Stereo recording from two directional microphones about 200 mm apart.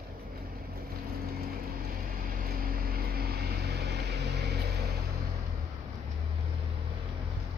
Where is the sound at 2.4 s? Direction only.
45° right (ahead or behind).